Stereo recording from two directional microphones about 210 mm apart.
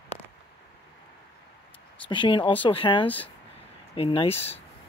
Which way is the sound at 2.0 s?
20° left (ahead or behind).